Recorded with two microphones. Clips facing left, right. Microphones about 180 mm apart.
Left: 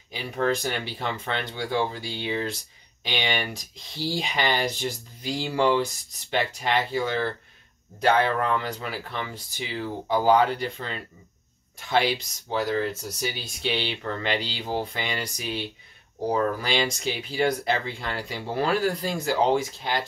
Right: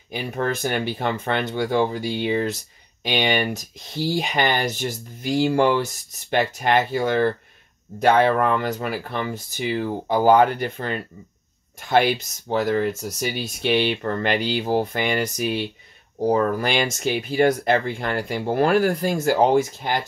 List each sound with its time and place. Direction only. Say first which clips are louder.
0.1 s speech: right 1 dB; 55° right (ahead or behind)